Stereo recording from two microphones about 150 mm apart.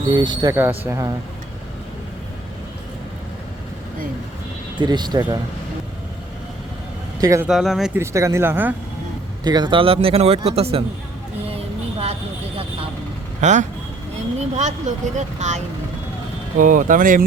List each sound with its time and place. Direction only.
0.1 s speech: 30° right (ahead or behind)
4.8 s speech: 30° right (ahead or behind)
7.2 s speech: 20° right (ahead or behind)
7.4 s speech: centre (ahead or behind)
7.9 s speech: 20° right (ahead or behind)
9.4 s a man's voice: 30° right (ahead or behind)
11.4 s vehicle: 40° right (ahead or behind)
13.4 s speech: 50° right (ahead or behind)
16.6 s speech: 65° right (ahead or behind)